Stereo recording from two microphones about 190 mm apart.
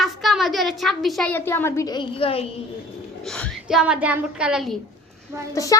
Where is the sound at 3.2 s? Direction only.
5° left (ahead or behind).